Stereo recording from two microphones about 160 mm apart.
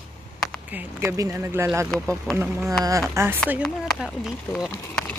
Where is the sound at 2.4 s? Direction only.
15° right (ahead or behind).